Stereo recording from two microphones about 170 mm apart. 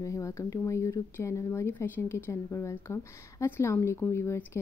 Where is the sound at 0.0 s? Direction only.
20° left (ahead or behind).